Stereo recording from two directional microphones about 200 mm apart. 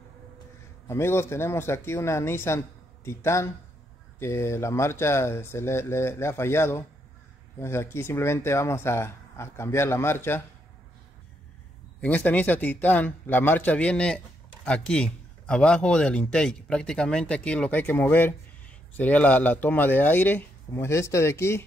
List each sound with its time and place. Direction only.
0.8 s speech: 15° left (ahead or behind)
12.0 s speech: 5° left (ahead or behind)